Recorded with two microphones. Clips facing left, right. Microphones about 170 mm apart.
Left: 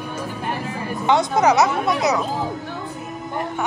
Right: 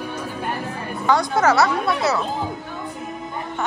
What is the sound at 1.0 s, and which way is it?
Speech, 20° left (ahead or behind).